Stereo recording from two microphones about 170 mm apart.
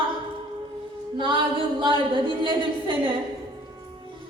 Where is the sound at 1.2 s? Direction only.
30° right (ahead or behind).